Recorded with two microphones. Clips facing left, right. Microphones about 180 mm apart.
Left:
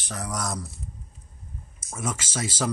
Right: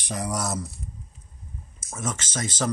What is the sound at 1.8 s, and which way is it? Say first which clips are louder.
Speech: even; 10° left (ahead or behind).